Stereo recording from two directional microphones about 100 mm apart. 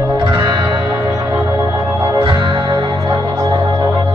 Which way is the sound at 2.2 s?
55° right (ahead or behind).